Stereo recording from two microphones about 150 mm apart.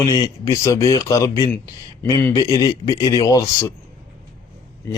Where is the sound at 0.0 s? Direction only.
25° left (ahead or behind).